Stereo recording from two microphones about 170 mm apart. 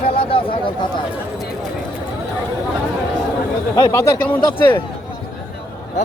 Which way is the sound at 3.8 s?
20° left (ahead or behind).